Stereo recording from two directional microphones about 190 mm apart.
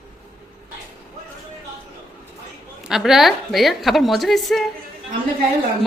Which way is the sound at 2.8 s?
Centre (ahead or behind).